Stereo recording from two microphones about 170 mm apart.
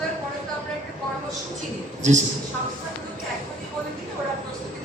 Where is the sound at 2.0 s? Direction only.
45° right (ahead or behind).